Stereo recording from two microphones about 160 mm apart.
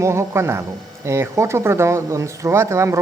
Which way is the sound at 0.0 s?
15° right (ahead or behind).